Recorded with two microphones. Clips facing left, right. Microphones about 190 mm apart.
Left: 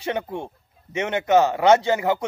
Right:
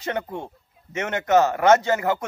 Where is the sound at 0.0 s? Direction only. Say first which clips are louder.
Left 1 dB; 15° left (ahead or behind).